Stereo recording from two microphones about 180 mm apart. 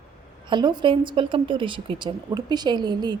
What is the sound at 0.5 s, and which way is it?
Speech, 25° right (ahead or behind).